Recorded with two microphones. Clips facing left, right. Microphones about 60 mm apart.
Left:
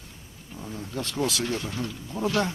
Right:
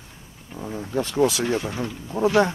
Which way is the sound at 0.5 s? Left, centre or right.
Right.